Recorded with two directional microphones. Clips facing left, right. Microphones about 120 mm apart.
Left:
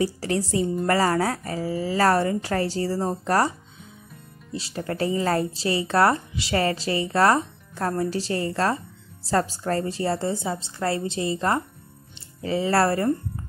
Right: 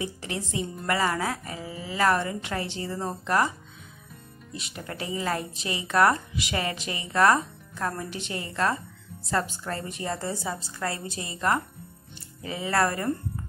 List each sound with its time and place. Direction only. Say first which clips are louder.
0.0 s a woman's voice: left 8 dB; 35° left (ahead or behind)